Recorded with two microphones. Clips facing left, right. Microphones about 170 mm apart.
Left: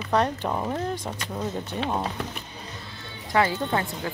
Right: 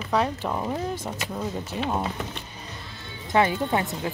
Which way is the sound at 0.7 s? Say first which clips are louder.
Even; 5° right (ahead or behind).